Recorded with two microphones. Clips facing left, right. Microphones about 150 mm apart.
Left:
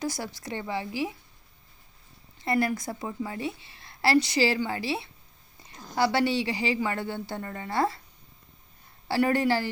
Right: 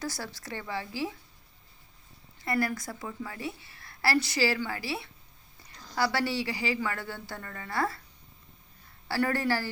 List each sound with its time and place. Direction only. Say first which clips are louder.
0.0 s speech: left 4 dB; 15° left (ahead or behind)
2.4 s a woman's voice: left 3 dB; 25° left (ahead or behind)
9.0 s a woman's voice: left 4 dB; 20° left (ahead or behind)